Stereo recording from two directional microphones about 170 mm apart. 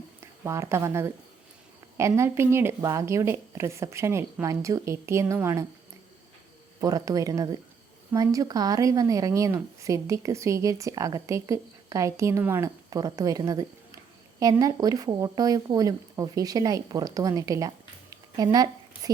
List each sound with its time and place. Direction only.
0.4 s speech: 15° right (ahead or behind)
6.8 s a woman's voice: 20° right (ahead or behind)
18.5 s a sound: 20° right (ahead or behind)